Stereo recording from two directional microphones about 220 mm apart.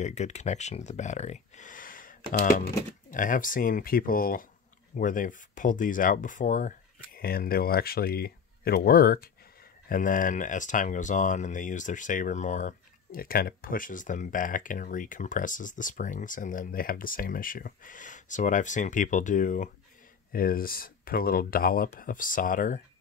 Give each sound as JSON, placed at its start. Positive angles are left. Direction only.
{"t": 0.0, "sound": "speech", "side_deg": 30}